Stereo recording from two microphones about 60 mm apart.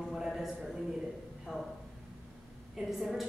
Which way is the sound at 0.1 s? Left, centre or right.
Centre.